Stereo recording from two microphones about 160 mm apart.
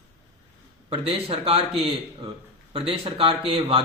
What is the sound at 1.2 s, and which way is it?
Speech, 40° right (ahead or behind).